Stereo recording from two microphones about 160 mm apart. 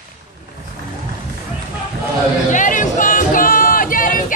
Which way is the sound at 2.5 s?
55° left (ahead or behind).